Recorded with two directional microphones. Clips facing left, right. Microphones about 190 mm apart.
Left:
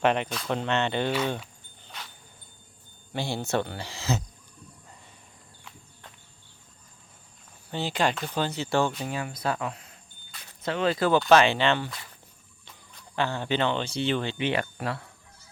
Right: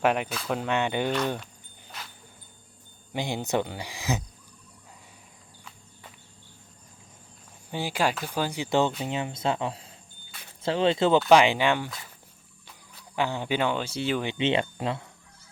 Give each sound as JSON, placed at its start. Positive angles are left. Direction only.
{"t": 0.0, "sound": "speech", "side_deg": -5}
{"t": 3.1, "sound": "speech", "side_deg": -15}
{"t": 5.6, "sound": "walk", "side_deg": -5}
{"t": 7.7, "sound": "speech", "side_deg": -10}
{"t": 11.3, "sound": "speech", "side_deg": -15}